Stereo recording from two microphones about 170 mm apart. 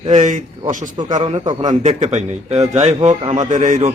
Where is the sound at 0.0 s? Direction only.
45° right (ahead or behind).